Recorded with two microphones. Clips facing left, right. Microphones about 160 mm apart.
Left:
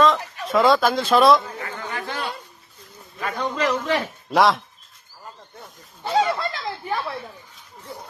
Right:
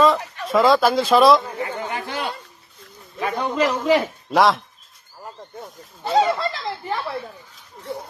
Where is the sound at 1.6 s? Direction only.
15° right (ahead or behind).